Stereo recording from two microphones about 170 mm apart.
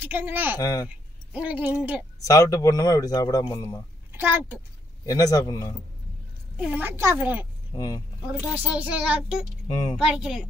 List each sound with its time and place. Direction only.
0.0 s a woman's voice: 10° right (ahead or behind)
0.6 s speech: 20° left (ahead or behind)
0.8 s speech: 10° right (ahead or behind)
2.2 s speech: 20° left (ahead or behind)
4.1 s a child's voice: 10° right (ahead or behind)
5.0 s speech: 20° left (ahead or behind)
6.6 s a woman's voice: 10° right (ahead or behind)
7.7 s speech: 20° left (ahead or behind)
8.5 s a woman's voice: 10° right (ahead or behind)
9.7 s speech: 20° left (ahead or behind)
9.9 s speech: 5° right (ahead or behind)